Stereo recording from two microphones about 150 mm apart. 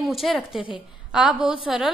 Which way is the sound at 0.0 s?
Centre (ahead or behind).